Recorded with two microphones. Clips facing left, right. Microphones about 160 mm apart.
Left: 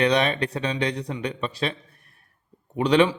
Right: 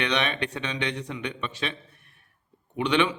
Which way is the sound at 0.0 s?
35° left (ahead or behind).